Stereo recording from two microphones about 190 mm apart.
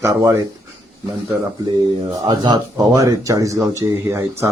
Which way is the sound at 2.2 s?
20° right (ahead or behind).